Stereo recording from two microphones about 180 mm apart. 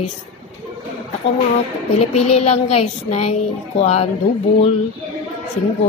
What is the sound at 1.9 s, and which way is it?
A woman's voice, 35° left (ahead or behind).